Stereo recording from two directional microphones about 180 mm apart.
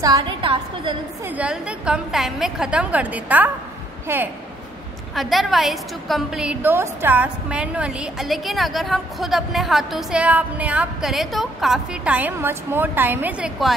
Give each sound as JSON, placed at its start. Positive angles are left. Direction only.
{"t": 0.0, "sound": "a woman's voice", "side_deg": -25}
{"t": 1.2, "sound": "a woman's voice", "side_deg": -10}
{"t": 5.1, "sound": "a woman's voice", "side_deg": 0}